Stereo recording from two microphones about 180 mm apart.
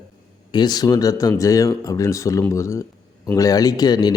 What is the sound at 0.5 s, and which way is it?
Speech, 20° left (ahead or behind).